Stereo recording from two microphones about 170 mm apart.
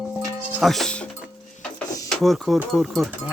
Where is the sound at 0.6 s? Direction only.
Centre (ahead or behind).